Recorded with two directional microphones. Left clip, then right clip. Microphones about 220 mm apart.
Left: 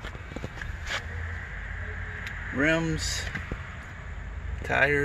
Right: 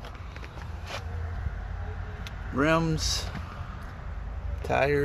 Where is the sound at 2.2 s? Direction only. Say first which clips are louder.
Even; 10° right (ahead or behind).